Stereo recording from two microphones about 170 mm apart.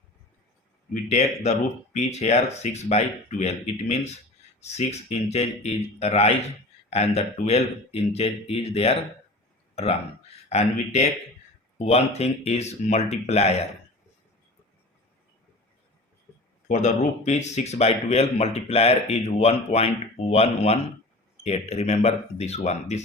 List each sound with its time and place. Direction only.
1.0 s speech: 40° left (ahead or behind)
10.5 s speech: 40° left (ahead or behind)
16.6 s speech: 45° left (ahead or behind)